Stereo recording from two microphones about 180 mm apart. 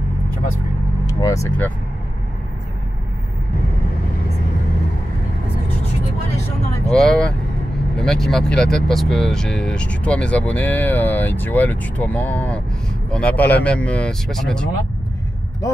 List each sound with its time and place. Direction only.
1.0 s speech: 20° left (ahead or behind)
6.9 s speech: 5° left (ahead or behind)